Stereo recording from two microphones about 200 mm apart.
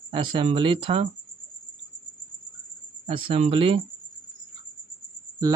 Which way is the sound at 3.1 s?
30° right (ahead or behind).